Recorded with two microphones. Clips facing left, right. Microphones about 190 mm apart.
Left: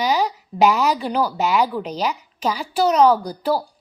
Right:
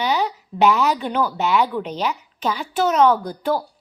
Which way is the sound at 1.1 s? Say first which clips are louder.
Even; 35° left (ahead or behind).